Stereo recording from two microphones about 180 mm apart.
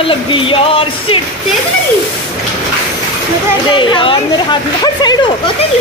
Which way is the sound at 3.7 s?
30° left (ahead or behind).